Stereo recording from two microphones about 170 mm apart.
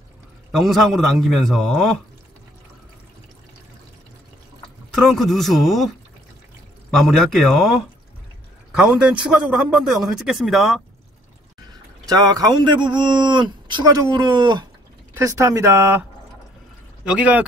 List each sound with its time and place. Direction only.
0.5 s a man's voice: centre (ahead or behind)
5.0 s a man's voice: centre (ahead or behind)
12.1 s a man's voice: 20° right (ahead or behind)
15.1 s speech: 15° right (ahead or behind)